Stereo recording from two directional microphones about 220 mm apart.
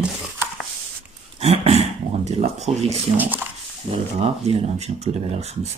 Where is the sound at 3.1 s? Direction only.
10° right (ahead or behind).